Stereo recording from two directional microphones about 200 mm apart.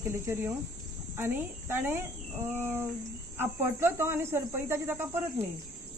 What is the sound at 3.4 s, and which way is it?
Speech, 10° right (ahead or behind).